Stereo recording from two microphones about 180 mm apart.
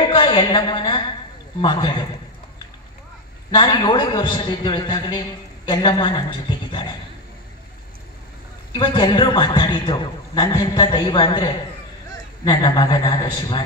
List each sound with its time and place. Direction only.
0.1 s a woman's voice: 25° left (ahead or behind)
3.5 s a man's voice: 25° left (ahead or behind)
6.7 s a sound: 25° left (ahead or behind)
8.7 s a man's voice: 25° left (ahead or behind)